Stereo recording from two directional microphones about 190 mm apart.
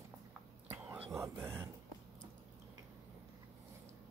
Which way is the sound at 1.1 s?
15° right (ahead or behind).